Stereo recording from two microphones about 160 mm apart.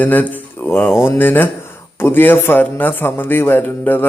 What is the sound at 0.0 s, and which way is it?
Speech, 10° left (ahead or behind).